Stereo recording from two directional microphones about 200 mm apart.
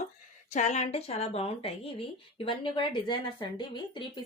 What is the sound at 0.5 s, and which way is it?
Speech, 35° left (ahead or behind).